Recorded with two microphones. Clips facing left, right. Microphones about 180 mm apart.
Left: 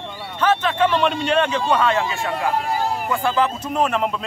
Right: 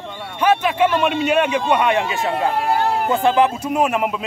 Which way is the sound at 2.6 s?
65° right (ahead or behind).